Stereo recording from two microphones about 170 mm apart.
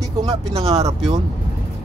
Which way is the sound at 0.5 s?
35° right (ahead or behind).